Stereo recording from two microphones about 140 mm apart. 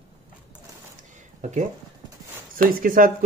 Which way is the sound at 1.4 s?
55° right (ahead or behind).